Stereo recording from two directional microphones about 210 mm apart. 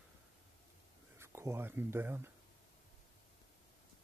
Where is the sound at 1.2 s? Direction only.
15° right (ahead or behind).